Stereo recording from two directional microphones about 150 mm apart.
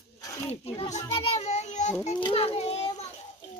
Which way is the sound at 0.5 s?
45° left (ahead or behind).